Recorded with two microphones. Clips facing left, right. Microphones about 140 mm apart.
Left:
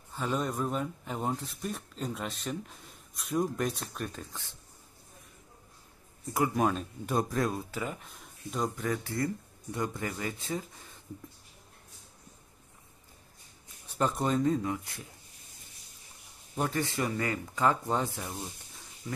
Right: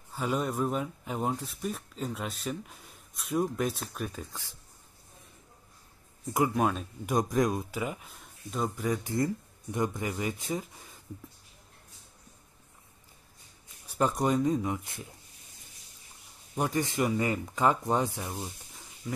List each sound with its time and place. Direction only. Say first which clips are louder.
0.1 s speech: right 1 dB; 10° right (ahead or behind)
6.5 s speech: even; centre (ahead or behind)
7.1 s speech: right 3 dB; 15° right (ahead or behind)
13.8 s speech: right 2 dB; 10° right (ahead or behind)
16.5 s speech: right 2 dB; 15° right (ahead or behind)